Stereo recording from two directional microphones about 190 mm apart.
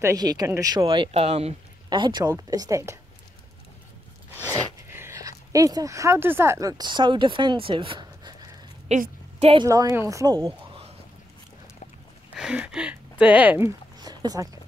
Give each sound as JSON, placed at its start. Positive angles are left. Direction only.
{"t": 0.0, "sound": "speech", "side_deg": -20}
{"t": 1.9, "sound": "speech", "side_deg": -20}
{"t": 4.4, "sound": "speech", "side_deg": -15}
{"t": 8.8, "sound": "a sound", "side_deg": -35}
{"t": 9.7, "sound": "a woman's voice", "side_deg": -15}
{"t": 12.4, "sound": "speech", "side_deg": -5}